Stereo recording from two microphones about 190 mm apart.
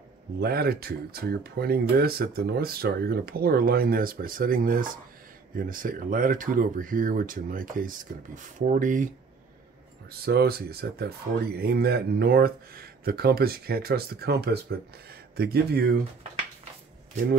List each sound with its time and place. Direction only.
0.4 s speech: 55° right (ahead or behind)
10.2 s speech: 55° right (ahead or behind)